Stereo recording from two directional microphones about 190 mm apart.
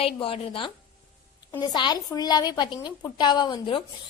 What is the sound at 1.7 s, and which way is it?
A woman's voice, 20° left (ahead or behind).